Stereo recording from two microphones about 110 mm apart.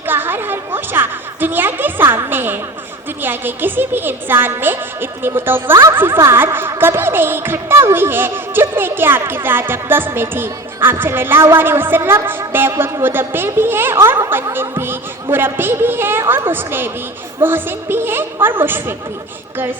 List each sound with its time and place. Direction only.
0.0 s music: 20° right (ahead or behind)
3.2 s a woman's voice: 20° right (ahead or behind)